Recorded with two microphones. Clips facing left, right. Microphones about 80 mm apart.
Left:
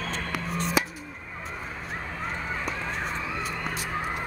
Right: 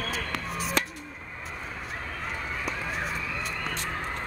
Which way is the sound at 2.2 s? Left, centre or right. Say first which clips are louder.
Left 2 dB; centre.